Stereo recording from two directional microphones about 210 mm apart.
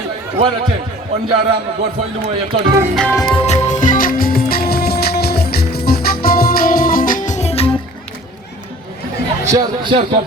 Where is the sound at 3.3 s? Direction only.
30° left (ahead or behind).